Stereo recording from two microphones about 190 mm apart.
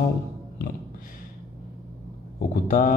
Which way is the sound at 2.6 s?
40° left (ahead or behind).